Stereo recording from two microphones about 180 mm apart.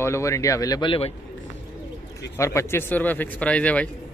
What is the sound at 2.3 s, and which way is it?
Speech, 15° left (ahead or behind).